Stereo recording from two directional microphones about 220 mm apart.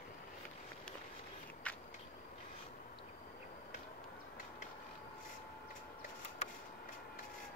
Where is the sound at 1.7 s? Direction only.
5° left (ahead or behind).